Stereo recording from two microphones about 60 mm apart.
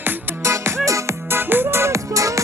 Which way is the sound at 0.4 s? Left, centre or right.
Right.